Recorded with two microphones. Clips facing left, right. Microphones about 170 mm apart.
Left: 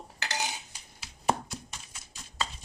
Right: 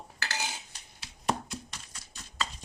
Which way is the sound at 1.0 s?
5° left (ahead or behind).